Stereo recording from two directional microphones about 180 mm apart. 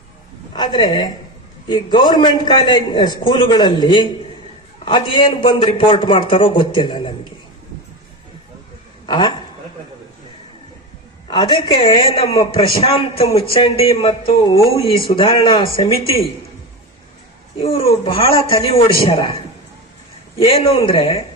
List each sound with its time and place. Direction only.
0.5 s a man's voice: 25° left (ahead or behind)
9.0 s a man's voice: 25° left (ahead or behind)
11.3 s a man's voice: 25° left (ahead or behind)
17.6 s speech: 30° left (ahead or behind)
20.4 s a man's voice: 30° left (ahead or behind)